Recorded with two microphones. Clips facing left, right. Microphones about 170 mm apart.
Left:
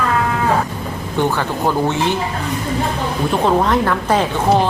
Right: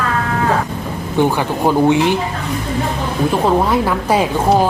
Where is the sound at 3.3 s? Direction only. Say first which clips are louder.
Even; 10° right (ahead or behind).